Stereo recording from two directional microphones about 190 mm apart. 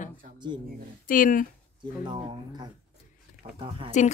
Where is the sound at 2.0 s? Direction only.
25° right (ahead or behind).